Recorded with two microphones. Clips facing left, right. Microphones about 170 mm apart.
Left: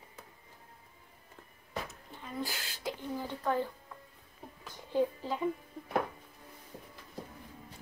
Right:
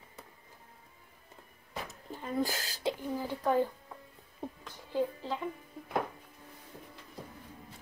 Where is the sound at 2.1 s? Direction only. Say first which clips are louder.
Right 7 dB; 40° right (ahead or behind).